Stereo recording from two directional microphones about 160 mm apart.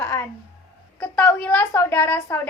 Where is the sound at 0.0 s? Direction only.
15° left (ahead or behind).